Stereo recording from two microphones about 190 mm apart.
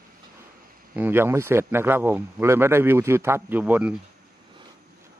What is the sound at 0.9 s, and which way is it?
A man's voice, 10° right (ahead or behind).